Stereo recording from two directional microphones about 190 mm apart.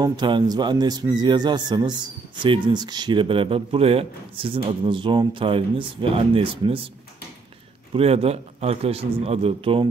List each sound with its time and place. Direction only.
0.0 s speech: 20° right (ahead or behind)
7.9 s a man's voice: 30° right (ahead or behind)